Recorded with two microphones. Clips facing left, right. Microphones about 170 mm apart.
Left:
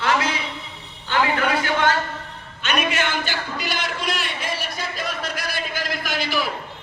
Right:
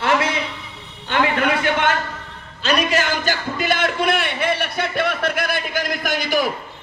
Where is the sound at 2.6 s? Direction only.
35° right (ahead or behind).